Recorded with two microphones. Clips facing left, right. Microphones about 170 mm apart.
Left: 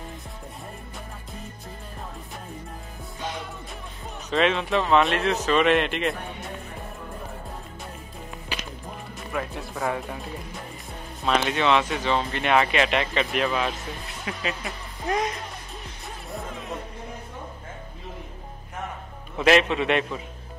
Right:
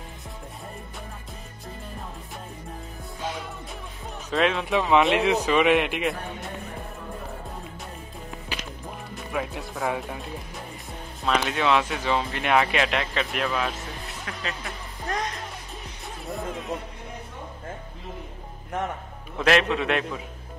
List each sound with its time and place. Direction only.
4.3 s speech: centre (ahead or behind)
4.9 s speech: 15° right (ahead or behind)
9.3 s speech: centre (ahead or behind)
11.2 s speech: centre (ahead or behind)
16.3 s music: centre (ahead or behind)
19.3 s speech: centre (ahead or behind)